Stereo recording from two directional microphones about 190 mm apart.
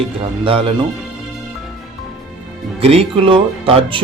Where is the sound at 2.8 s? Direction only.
30° right (ahead or behind).